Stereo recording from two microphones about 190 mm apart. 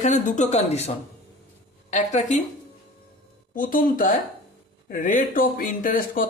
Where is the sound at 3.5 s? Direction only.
45° left (ahead or behind).